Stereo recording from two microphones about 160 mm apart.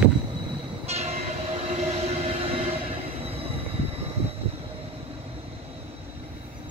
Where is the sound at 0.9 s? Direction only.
40° right (ahead or behind).